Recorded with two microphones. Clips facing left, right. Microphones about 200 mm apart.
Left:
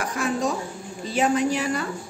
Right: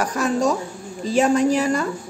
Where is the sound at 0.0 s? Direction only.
40° right (ahead or behind).